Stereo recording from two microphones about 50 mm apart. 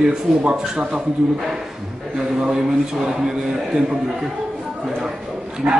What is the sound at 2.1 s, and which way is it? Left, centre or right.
A man's voice, centre.